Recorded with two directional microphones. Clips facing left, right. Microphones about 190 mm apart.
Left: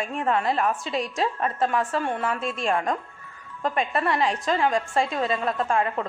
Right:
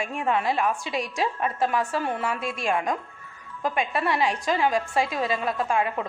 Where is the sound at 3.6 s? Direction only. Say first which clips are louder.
Left 1 dB; 5° right (ahead or behind).